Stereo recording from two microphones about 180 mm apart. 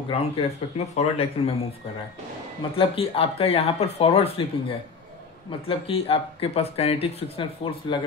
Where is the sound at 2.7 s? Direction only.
30° left (ahead or behind).